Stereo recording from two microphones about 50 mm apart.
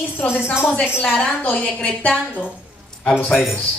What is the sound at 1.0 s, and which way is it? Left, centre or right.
Speech, centre.